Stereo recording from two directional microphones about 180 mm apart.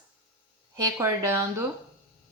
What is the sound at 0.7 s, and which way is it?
Speech, 15° right (ahead or behind).